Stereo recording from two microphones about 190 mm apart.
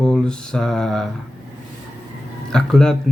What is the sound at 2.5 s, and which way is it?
Speech, 5° left (ahead or behind).